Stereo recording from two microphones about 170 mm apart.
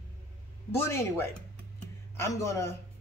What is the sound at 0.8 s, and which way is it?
A man's voice, 15° left (ahead or behind).